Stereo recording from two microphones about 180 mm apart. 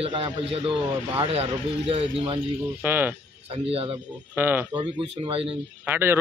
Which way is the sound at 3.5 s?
35° right (ahead or behind).